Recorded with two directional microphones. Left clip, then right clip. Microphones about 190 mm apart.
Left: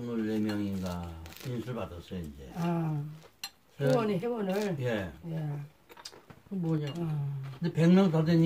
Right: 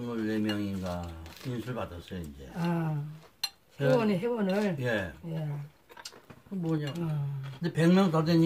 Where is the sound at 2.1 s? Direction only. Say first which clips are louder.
Even; 15° right (ahead or behind).